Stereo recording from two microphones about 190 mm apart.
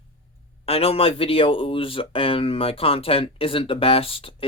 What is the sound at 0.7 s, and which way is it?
Speech, 30° left (ahead or behind).